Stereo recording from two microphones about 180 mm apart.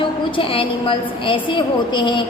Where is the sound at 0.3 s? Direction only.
30° left (ahead or behind).